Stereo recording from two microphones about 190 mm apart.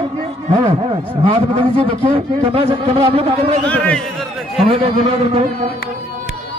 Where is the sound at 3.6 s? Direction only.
5° left (ahead or behind).